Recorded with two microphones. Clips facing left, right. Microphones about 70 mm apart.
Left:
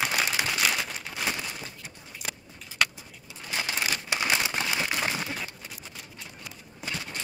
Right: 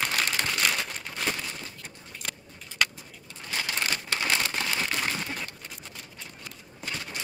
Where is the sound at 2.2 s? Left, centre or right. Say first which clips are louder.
Left 1 dB; centre.